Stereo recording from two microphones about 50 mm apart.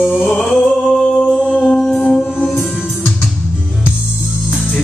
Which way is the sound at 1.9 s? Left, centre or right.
Left.